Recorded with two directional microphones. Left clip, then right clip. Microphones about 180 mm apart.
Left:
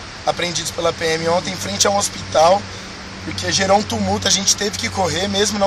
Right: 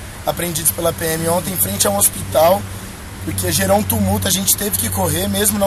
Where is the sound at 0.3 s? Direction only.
Centre (ahead or behind).